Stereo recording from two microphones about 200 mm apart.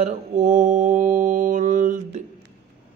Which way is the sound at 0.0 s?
35° right (ahead or behind).